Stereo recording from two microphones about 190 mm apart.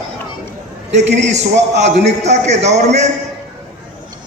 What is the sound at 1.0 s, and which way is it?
A man's voice, 35° right (ahead or behind).